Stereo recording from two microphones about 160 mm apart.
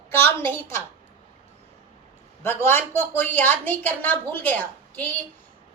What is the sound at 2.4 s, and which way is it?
A woman's voice, 15° left (ahead or behind).